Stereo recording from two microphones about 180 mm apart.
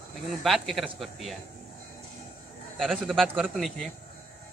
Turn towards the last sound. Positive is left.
turn(degrees=-5)  # may be behind; listen again after turning